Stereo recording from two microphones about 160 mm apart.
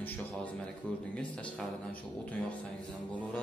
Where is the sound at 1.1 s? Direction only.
5° left (ahead or behind).